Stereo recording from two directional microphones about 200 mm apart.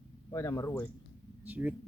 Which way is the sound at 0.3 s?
15° left (ahead or behind).